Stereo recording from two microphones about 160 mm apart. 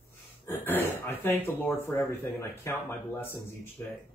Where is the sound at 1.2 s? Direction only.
15° left (ahead or behind).